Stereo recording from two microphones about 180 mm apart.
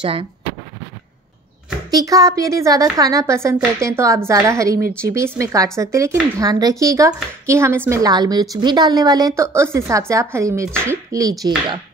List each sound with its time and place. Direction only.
0.0 s speech: 30° right (ahead or behind)
1.9 s a woman's voice: 20° right (ahead or behind)